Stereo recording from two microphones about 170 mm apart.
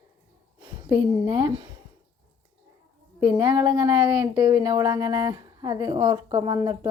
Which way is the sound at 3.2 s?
20° right (ahead or behind).